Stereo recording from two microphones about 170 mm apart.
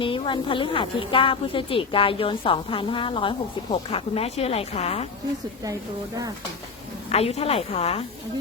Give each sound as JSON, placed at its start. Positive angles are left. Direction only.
{"t": 0.0, "sound": "speech", "side_deg": 30}
{"t": 7.1, "sound": "speech", "side_deg": 35}